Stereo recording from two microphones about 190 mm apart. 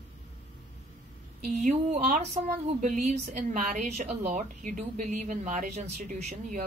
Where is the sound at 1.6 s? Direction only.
40° right (ahead or behind).